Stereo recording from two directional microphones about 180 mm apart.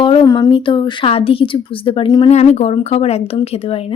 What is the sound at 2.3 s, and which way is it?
Speech, 35° left (ahead or behind).